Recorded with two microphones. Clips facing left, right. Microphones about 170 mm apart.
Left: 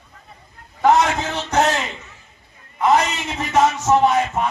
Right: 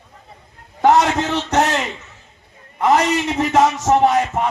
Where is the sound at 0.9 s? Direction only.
80° right.